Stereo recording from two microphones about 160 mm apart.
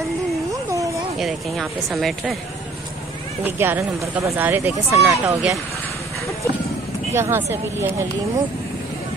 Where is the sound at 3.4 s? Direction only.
15° right (ahead or behind).